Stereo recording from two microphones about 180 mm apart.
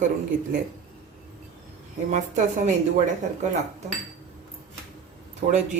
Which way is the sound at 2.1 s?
45° right (ahead or behind).